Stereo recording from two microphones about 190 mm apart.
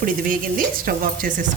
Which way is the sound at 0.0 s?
45° right (ahead or behind).